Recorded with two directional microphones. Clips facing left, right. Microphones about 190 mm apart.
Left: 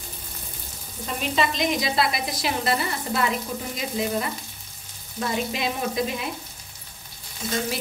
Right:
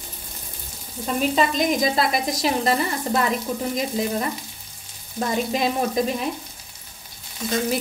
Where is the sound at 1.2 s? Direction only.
45° right (ahead or behind).